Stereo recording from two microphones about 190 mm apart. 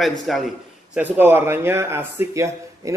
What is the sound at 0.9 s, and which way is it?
Speech, 10° right (ahead or behind).